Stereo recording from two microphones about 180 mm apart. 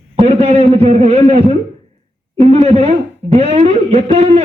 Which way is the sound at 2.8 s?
35° right (ahead or behind).